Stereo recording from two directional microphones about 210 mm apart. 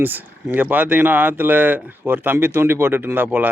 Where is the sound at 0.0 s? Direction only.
10° right (ahead or behind).